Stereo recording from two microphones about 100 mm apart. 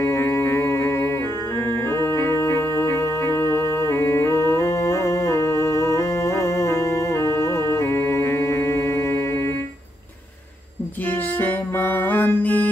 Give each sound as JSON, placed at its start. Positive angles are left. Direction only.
{"t": 0.0, "sound": "music", "side_deg": 25}
{"t": 11.3, "sound": "music", "side_deg": 20}